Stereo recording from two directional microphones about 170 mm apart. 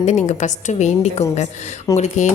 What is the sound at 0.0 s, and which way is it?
Speech, 40° left (ahead or behind).